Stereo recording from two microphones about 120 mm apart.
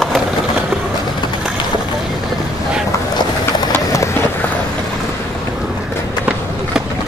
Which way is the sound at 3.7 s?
25° left (ahead or behind).